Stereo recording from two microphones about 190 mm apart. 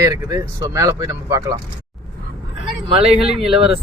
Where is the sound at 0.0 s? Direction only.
15° right (ahead or behind).